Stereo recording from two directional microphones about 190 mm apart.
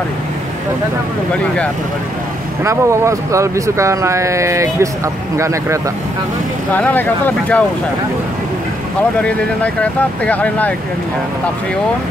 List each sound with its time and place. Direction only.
2.6 s speech: 15° right (ahead or behind)
6.7 s speech: 10° left (ahead or behind)
9.2 s speech: 5° left (ahead or behind)